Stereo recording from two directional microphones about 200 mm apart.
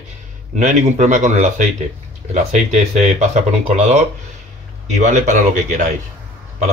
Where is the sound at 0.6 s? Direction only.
35° right (ahead or behind).